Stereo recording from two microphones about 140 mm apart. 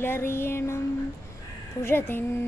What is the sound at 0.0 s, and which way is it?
Speech, 15° left (ahead or behind).